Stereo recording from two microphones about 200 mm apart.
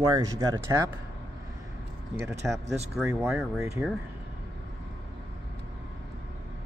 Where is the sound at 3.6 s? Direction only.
15° right (ahead or behind).